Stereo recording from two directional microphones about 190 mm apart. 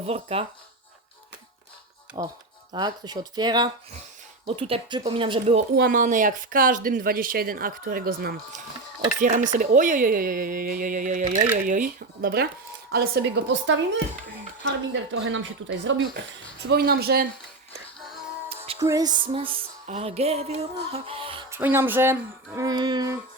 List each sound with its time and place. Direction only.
0.0 s music: 30° right (ahead or behind)
2.2 s speech: 20° right (ahead or behind)
5.7 s speech: 50° right (ahead or behind)
9.2 s a woman's voice: 40° right (ahead or behind); by 13.7 s 65° right (ahead or behind)
14.6 s speech: 85° right
16.6 s a woman's voice: 55° right (ahead or behind)
18.4 s music: 30° right (ahead or behind)
18.8 s music: 20° right (ahead or behind)
21.5 s speech: 10° right (ahead or behind)